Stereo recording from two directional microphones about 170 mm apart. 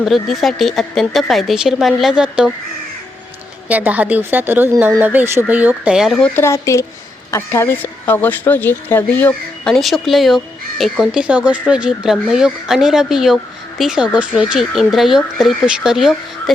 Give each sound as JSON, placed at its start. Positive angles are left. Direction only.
{"t": 0.0, "sound": "a woman's voice", "side_deg": 0}
{"t": 3.7, "sound": "speech", "side_deg": -10}
{"t": 6.3, "sound": "a woman's voice", "side_deg": 15}